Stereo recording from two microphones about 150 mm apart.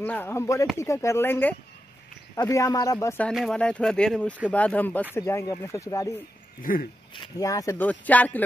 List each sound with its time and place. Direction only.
0.0 s speech: 10° left (ahead or behind)
3.3 s speech: 5° left (ahead or behind); by 6.1 s 20° left (ahead or behind)
6.6 s a sound: 70° left (ahead or behind)
7.2 s speech: 25° left (ahead or behind)